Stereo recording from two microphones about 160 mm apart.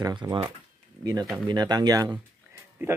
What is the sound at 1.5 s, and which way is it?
Speech, 25° right (ahead or behind).